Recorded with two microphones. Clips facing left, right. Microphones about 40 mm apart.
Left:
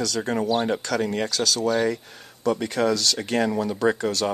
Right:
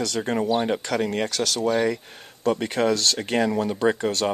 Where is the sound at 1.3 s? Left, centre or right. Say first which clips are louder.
Left 1 dB; right.